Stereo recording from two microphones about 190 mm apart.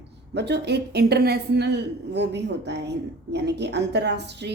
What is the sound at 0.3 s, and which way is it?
A woman's voice, 60° right (ahead or behind).